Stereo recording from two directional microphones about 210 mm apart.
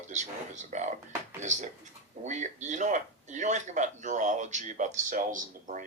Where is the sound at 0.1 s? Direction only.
35° right (ahead or behind).